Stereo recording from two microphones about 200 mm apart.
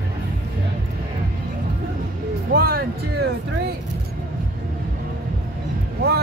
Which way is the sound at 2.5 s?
50° right (ahead or behind).